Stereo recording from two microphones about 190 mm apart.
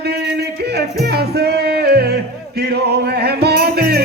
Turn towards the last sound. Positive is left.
turn(degrees=-55)  # may be behind; listen again after turning